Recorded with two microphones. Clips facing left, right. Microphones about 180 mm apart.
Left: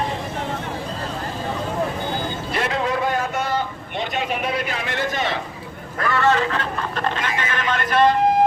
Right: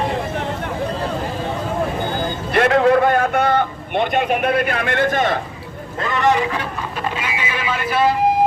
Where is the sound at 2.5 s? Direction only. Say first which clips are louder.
Right 10 dB; 60° right (ahead or behind).